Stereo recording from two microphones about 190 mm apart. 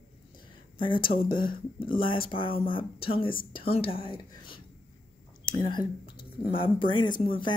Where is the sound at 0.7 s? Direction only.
25° left (ahead or behind).